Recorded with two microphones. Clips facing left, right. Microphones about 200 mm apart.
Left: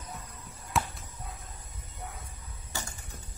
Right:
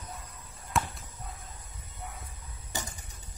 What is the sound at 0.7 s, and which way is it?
Basketball bounce, centre (ahead or behind).